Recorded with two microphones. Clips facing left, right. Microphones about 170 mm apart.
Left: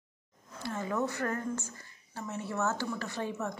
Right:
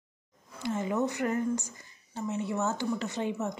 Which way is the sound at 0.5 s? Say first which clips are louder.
Right 4 dB; 20° right (ahead or behind).